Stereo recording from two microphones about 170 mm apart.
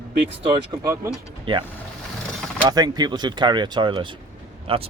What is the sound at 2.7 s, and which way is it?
Speech, 25° right (ahead or behind).